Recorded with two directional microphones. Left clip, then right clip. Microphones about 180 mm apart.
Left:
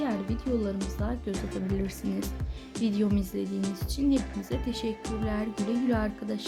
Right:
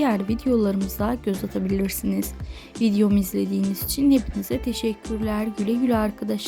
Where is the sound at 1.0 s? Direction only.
40° right (ahead or behind).